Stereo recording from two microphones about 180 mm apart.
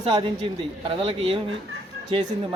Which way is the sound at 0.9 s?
30° right (ahead or behind).